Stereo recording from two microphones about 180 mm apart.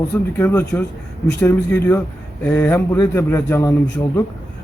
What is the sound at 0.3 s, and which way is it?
A man's voice, 15° left (ahead or behind).